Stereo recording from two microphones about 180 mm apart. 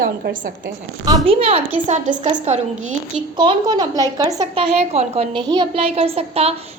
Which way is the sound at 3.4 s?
25° right (ahead or behind).